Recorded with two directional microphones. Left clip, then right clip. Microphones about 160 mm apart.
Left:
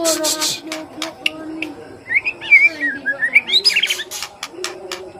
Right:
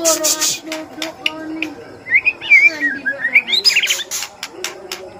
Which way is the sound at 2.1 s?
30° left (ahead or behind).